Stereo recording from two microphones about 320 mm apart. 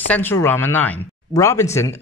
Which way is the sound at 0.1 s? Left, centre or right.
Centre.